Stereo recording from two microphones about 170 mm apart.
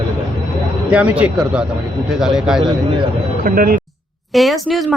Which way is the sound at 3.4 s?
55° right (ahead or behind).